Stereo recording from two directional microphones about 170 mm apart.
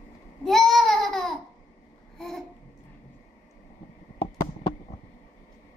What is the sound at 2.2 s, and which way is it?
Babbling, centre (ahead or behind).